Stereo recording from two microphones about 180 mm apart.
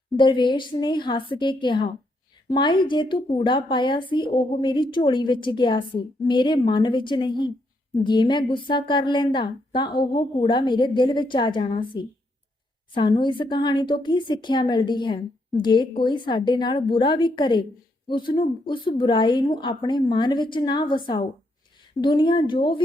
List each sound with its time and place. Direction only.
0.2 s a woman's voice: 25° left (ahead or behind)